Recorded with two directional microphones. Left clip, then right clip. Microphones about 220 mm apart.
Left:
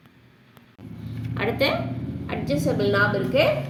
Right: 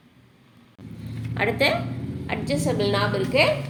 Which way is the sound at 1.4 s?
5° left (ahead or behind).